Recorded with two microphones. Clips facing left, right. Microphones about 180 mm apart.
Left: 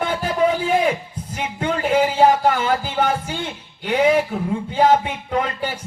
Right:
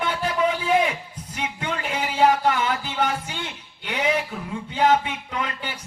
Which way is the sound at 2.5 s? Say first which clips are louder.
Left 4 dB; 45° left (ahead or behind).